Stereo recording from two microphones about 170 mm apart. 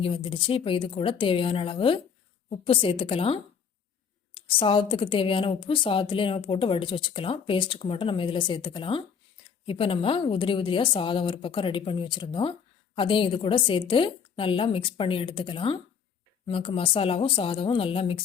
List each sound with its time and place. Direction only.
0.0 s a woman's voice: 30° left (ahead or behind)